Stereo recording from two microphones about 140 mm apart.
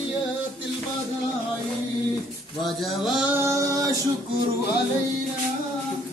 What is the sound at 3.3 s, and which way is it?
Music, 20° right (ahead or behind).